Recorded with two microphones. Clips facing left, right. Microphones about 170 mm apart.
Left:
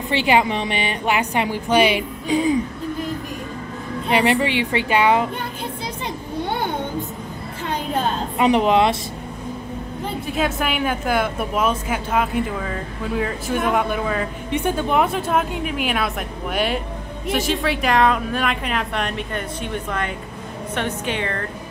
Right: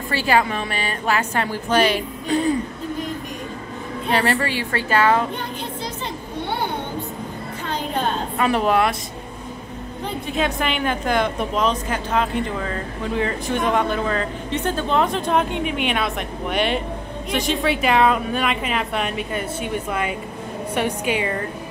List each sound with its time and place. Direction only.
0.1 s a woman's voice: 20° left (ahead or behind)
4.1 s a woman's voice: 15° left (ahead or behind)
8.4 s speech: 20° left (ahead or behind)
10.2 s a woman's voice: 5° left (ahead or behind)